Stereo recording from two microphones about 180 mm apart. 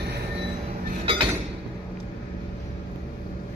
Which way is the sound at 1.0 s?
30° right (ahead or behind).